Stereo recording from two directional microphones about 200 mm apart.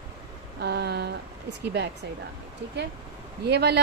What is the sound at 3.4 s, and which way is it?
Speech, 55° right (ahead or behind).